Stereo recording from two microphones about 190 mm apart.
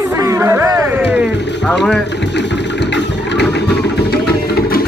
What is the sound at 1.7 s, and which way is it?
Speech, 5° left (ahead or behind).